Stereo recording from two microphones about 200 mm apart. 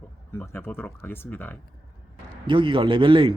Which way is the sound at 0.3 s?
10° left (ahead or behind).